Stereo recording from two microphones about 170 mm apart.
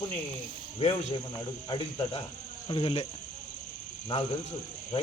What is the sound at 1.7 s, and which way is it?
Speech, 30° left (ahead or behind).